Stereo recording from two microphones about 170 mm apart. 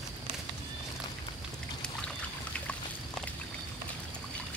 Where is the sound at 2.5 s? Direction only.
5° left (ahead or behind).